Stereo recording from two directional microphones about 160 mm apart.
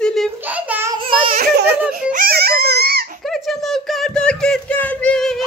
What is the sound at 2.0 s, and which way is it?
Crying, 65° right (ahead or behind).